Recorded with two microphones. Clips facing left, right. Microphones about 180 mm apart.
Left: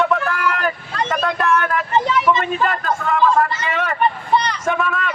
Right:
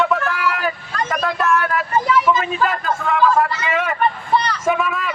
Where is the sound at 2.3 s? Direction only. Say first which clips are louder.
Even; centre (ahead or behind).